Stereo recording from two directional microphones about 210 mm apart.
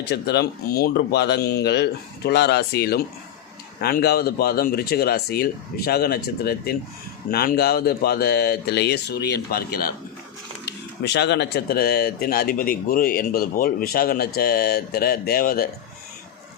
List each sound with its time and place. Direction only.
0.1 s speech: 50° left (ahead or behind)